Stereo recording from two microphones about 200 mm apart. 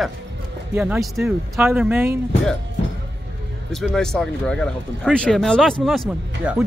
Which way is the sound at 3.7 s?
Centre (ahead or behind).